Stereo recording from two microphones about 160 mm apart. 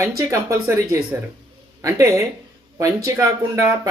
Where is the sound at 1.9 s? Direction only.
20° right (ahead or behind).